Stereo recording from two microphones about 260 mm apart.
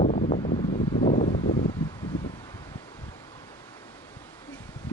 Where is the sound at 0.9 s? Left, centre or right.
Left.